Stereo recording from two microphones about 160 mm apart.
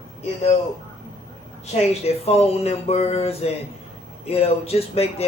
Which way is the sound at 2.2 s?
40° left (ahead or behind).